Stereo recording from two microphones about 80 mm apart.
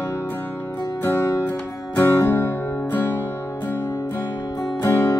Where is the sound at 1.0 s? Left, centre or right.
Left.